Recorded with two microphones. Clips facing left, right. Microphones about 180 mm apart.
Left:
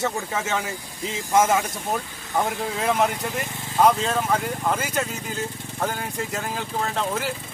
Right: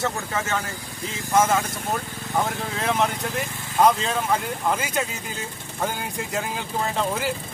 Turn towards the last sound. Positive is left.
turn(degrees=0)  # may be behind; listen again after turning